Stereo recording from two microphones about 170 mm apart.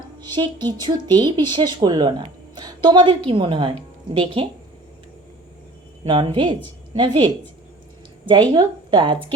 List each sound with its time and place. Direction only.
0.3 s a woman's voice: 25° right (ahead or behind)
6.1 s speech: 30° right (ahead or behind)
8.3 s speech: 25° right (ahead or behind)